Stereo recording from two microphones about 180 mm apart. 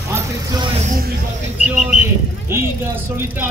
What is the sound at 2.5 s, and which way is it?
Speech, 15° right (ahead or behind).